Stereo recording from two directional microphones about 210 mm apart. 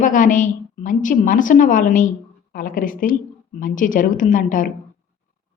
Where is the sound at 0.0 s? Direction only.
40° left (ahead or behind).